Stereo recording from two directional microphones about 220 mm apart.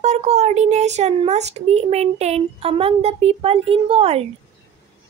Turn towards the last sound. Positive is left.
turn(degrees=-25)  # may be behind; listen again after turning